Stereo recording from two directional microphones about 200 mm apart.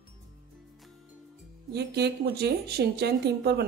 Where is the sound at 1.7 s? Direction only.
55° right (ahead or behind).